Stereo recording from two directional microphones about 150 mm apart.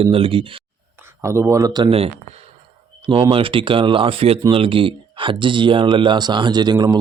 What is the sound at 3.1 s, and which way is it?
Speech, 35° right (ahead or behind).